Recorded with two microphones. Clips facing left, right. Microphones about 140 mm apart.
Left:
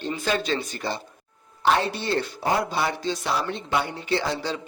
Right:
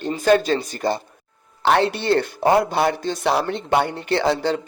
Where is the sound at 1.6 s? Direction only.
70° right (ahead or behind).